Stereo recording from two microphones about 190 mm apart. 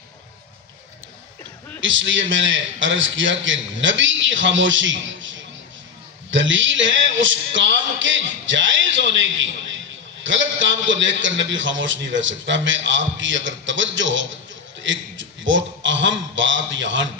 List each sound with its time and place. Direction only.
1.8 s a man's voice: 85° right